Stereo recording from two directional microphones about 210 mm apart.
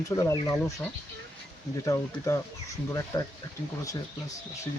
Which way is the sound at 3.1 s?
15° left (ahead or behind).